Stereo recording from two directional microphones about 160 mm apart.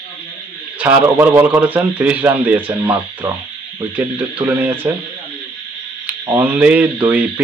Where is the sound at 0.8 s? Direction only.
10° right (ahead or behind).